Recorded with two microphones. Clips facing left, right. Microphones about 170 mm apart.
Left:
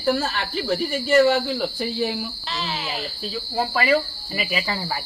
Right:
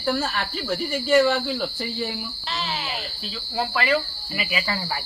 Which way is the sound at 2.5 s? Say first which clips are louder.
Even; centre (ahead or behind).